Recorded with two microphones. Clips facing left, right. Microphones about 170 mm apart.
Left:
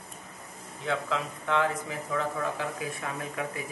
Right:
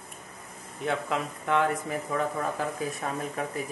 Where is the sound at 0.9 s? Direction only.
50° right (ahead or behind).